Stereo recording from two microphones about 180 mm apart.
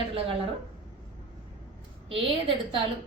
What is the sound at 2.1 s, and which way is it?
Speech, 30° right (ahead or behind).